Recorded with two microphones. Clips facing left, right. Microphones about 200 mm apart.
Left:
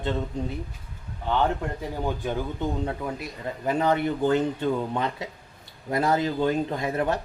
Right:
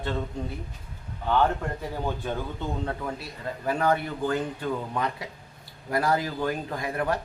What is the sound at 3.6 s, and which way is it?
Speech, 20° left (ahead or behind).